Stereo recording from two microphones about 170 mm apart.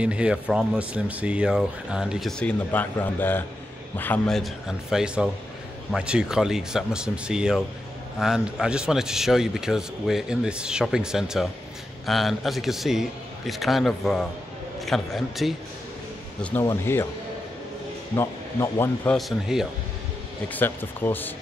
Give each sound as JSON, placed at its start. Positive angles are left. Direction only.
{"t": 0.0, "sound": "speech", "side_deg": -5}
{"t": 16.6, "sound": "a man's voice", "side_deg": 15}
{"t": 18.1, "sound": "a man's voice", "side_deg": 15}
{"t": 19.1, "sound": "speech", "side_deg": 0}
{"t": 20.4, "sound": "a man's voice", "side_deg": 10}